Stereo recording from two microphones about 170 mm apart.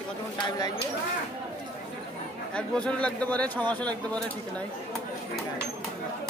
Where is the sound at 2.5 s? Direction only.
5° left (ahead or behind).